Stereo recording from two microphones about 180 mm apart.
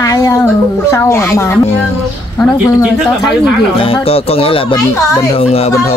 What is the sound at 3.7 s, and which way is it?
Speech, 30° left (ahead or behind).